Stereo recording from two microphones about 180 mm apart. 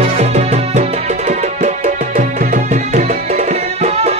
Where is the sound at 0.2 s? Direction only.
35° right (ahead or behind).